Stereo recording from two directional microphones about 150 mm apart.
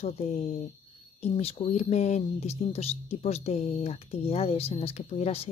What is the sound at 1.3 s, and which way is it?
Speech, 45° left (ahead or behind).